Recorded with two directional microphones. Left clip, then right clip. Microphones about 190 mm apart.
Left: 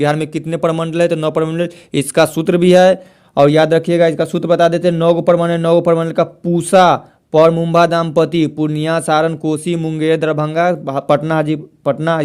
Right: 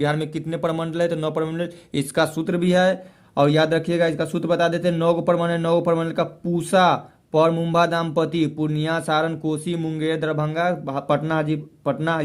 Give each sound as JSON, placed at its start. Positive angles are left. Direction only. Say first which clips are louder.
{"t": 0.0, "sound": "a man's voice", "louder": "left 7 dB", "side_deg": 40}